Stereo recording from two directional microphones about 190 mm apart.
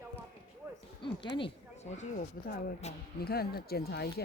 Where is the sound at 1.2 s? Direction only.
30° left (ahead or behind).